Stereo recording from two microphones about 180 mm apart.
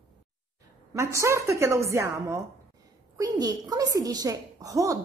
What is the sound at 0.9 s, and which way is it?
A woman's voice, 15° right (ahead or behind).